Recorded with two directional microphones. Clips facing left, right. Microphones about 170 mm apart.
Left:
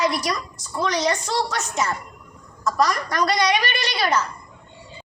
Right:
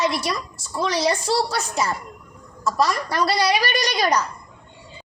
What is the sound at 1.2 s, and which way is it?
Speech, 35° right (ahead or behind).